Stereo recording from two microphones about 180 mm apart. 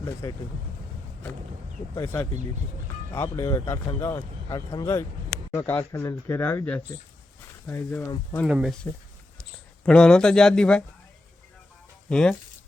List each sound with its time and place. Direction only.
0.0 s speech: 20° left (ahead or behind)
3.1 s speech: 15° left (ahead or behind)
8.4 s speech: 5° right (ahead or behind)
12.0 s speech: 5° left (ahead or behind)